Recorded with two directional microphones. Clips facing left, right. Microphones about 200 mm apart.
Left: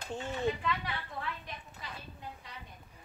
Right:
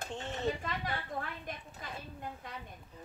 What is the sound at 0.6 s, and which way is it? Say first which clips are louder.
A woman's voice: left 2 dB; 45° right (ahead or behind).